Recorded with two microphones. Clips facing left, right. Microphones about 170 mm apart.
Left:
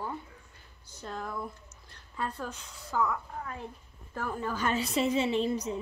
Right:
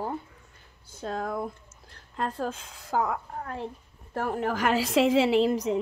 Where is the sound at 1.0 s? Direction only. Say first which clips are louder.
Right 6 dB; 80° right.